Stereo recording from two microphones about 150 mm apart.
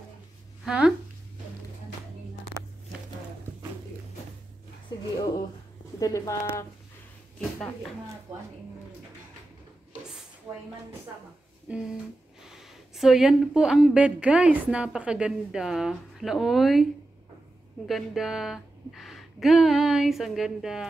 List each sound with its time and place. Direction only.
0.7 s speech: 5° right (ahead or behind)
5.9 s speech: 20° left (ahead or behind)
7.3 s speech: 5° left (ahead or behind)
11.7 s speech: 10° right (ahead or behind)
17.8 s speech: centre (ahead or behind)